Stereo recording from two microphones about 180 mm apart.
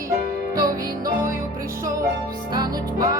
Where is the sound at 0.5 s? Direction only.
20° right (ahead or behind).